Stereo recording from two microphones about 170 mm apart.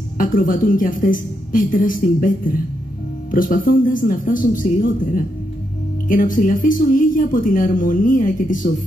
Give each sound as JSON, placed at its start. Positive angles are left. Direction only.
{"t": 0.2, "sound": "speech", "side_deg": 50}